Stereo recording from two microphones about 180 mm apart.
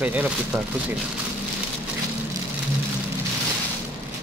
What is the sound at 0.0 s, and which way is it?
Speech, 10° right (ahead or behind).